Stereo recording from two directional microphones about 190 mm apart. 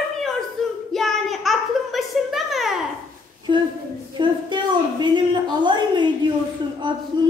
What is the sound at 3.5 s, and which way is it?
A woman's voice, 25° right (ahead or behind).